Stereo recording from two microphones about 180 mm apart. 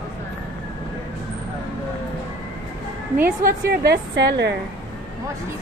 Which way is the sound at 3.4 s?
65° right (ahead or behind).